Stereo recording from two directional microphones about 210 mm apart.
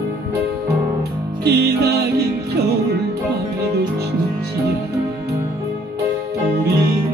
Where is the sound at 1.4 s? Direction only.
50° right (ahead or behind).